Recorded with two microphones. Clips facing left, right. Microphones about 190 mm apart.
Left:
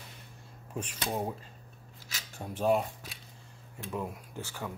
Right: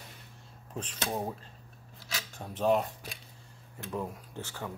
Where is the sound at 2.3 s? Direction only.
10° left (ahead or behind).